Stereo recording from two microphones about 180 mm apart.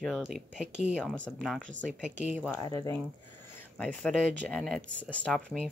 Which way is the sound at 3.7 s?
5° left (ahead or behind).